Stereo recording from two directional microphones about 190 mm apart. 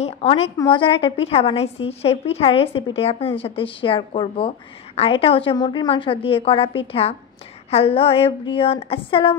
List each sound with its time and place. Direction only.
0.0 s a woman's voice: 30° left (ahead or behind)